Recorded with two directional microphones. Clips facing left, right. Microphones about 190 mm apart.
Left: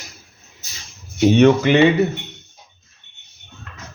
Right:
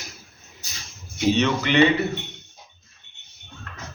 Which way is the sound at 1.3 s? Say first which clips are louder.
Left 9 dB; 50° left (ahead or behind).